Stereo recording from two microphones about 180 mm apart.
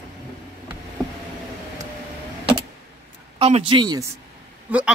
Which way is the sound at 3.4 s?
30° right (ahead or behind).